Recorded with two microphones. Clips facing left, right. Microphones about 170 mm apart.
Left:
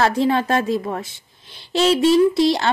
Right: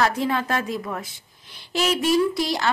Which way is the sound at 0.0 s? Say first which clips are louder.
Left 5 dB; 30° left (ahead or behind).